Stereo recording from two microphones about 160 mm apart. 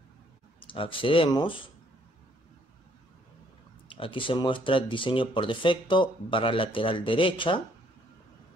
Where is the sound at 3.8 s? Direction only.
35° left (ahead or behind).